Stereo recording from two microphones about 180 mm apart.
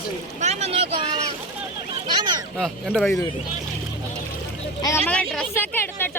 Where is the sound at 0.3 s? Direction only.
40° right (ahead or behind).